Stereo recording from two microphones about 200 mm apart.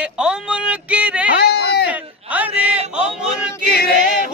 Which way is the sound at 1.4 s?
55° left (ahead or behind).